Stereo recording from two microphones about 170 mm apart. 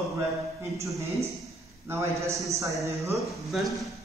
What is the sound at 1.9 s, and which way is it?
Speech, 15° right (ahead or behind).